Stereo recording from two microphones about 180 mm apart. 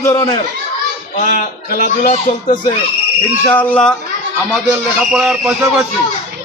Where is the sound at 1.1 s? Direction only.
45° left (ahead or behind).